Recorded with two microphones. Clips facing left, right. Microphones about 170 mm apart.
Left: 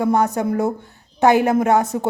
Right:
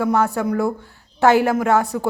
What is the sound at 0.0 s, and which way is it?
A woman's voice, 20° left (ahead or behind).